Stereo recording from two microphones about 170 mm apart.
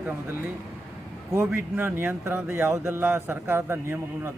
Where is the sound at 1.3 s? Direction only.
15° right (ahead or behind).